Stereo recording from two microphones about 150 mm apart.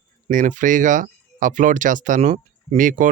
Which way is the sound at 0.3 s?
60° right (ahead or behind).